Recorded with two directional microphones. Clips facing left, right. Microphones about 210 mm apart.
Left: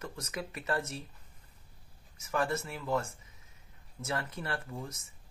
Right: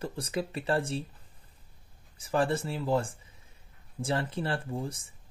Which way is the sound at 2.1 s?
30° right (ahead or behind).